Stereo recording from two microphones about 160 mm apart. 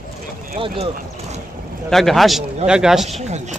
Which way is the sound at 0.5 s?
35° right (ahead or behind).